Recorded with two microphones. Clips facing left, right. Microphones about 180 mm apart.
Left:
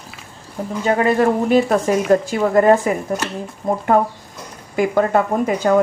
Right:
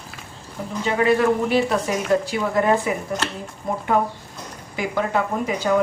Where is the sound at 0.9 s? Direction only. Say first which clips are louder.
Left 2 dB; 45° left (ahead or behind).